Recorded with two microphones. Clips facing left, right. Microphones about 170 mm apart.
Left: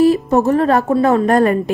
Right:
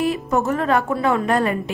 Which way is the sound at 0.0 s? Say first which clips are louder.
Left 8 dB; 35° left (ahead or behind).